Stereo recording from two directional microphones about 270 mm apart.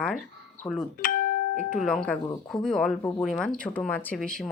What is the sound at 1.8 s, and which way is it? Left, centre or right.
Speech, centre.